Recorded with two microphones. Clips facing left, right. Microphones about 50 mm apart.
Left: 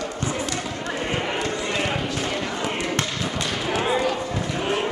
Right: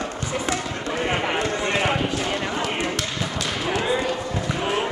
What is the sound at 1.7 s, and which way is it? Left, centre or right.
Basketball bounce, right.